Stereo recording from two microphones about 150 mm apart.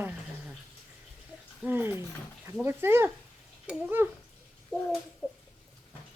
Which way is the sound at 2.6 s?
15° right (ahead or behind).